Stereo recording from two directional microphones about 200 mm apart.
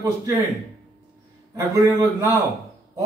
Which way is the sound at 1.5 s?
15° right (ahead or behind).